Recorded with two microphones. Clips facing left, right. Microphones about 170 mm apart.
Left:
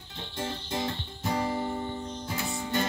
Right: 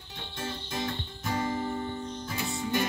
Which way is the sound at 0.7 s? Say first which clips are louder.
Left 1 dB; 30° left (ahead or behind).